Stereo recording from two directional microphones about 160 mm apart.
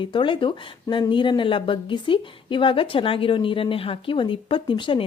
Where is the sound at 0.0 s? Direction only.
30° left (ahead or behind).